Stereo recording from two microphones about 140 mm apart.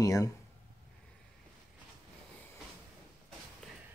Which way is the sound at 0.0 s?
25° left (ahead or behind).